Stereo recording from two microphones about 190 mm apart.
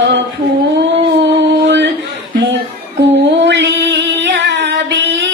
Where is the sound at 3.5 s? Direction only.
65° right (ahead or behind).